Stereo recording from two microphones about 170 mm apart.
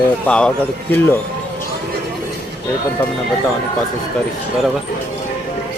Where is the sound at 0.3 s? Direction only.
5° left (ahead or behind).